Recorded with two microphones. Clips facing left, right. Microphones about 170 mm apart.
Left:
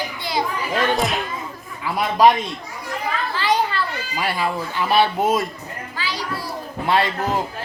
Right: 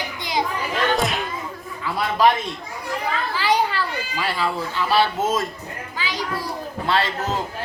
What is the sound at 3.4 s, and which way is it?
Children playing, 10° right (ahead or behind).